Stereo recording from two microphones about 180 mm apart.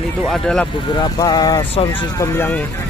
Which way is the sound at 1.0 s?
20° left (ahead or behind).